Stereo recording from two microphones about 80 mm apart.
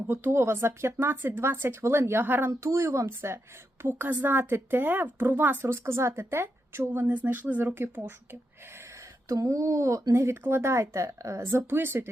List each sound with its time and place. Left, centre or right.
0.1 s a woman's voice: right
9.3 s speech: right